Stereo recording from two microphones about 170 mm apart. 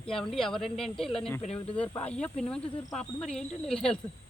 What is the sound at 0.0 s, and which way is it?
Speech, 5° left (ahead or behind).